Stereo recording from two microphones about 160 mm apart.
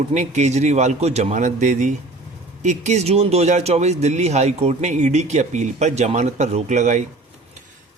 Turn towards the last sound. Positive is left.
turn(degrees=-50)  # may be behind; listen again after turning